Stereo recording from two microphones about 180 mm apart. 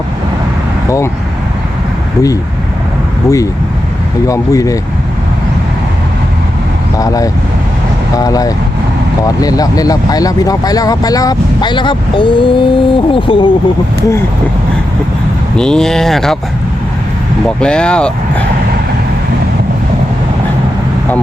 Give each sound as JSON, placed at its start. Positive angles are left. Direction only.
{"t": 0.9, "sound": "speech", "side_deg": 15}
{"t": 3.2, "sound": "speech", "side_deg": 15}
{"t": 7.0, "sound": "speech", "side_deg": 20}
{"t": 15.5, "sound": "speech", "side_deg": 5}
{"t": 17.6, "sound": "speech", "side_deg": 5}